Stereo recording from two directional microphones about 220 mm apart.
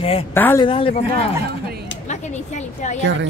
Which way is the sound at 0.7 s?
25° left (ahead or behind).